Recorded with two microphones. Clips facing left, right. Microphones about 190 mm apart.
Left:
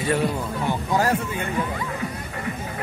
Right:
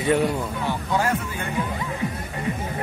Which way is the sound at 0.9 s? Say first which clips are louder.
Left 2 dB; 40° left (ahead or behind).